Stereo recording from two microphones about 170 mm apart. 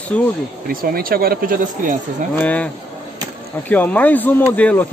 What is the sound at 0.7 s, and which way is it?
Speech, 60° right (ahead or behind).